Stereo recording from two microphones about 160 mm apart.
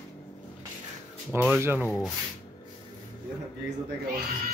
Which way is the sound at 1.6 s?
15° right (ahead or behind).